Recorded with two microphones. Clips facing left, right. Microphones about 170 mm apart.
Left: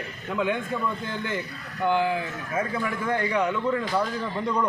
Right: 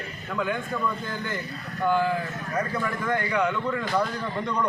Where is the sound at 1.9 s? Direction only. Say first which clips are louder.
Even; 20° left (ahead or behind).